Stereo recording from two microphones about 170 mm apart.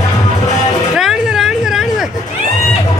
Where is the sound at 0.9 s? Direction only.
Centre (ahead or behind).